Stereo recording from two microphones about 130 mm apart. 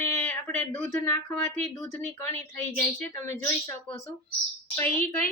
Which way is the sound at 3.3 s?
15° left (ahead or behind).